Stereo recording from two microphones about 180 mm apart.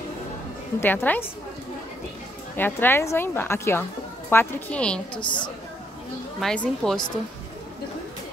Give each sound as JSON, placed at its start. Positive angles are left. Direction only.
{"t": 0.7, "sound": "a woman's voice", "side_deg": 10}
{"t": 2.5, "sound": "a woman's voice", "side_deg": 10}
{"t": 5.2, "sound": "a woman's voice", "side_deg": 25}
{"t": 6.4, "sound": "a woman's voice", "side_deg": 5}